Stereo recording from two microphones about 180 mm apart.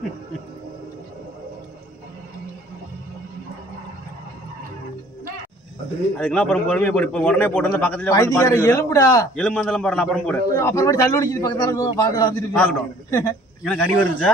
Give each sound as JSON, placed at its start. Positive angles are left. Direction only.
{"t": 6.1, "sound": "a man's voice", "side_deg": 5}
{"t": 8.1, "sound": "a man's voice", "side_deg": 20}
{"t": 10.5, "sound": "a man's voice", "side_deg": 15}
{"t": 13.7, "sound": "a man's voice", "side_deg": 5}